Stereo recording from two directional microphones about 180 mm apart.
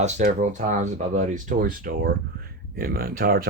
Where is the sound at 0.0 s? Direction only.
45° right (ahead or behind).